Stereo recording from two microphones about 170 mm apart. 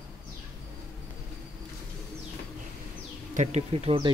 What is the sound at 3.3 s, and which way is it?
Speech, 40° right (ahead or behind).